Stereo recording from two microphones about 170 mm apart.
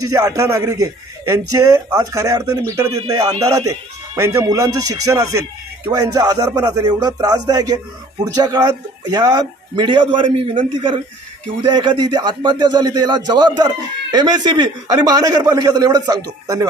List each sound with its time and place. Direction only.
0.1 s speech: 20° right (ahead or behind)